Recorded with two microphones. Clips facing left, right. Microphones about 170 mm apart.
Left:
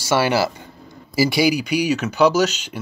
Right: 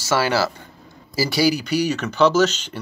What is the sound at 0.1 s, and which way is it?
Speech, 15° left (ahead or behind).